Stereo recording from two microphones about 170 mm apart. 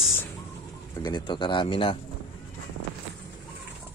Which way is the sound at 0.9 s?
25° left (ahead or behind).